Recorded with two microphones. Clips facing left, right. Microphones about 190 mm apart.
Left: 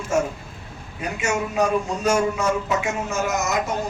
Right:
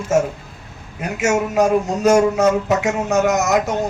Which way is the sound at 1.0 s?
75° right (ahead or behind).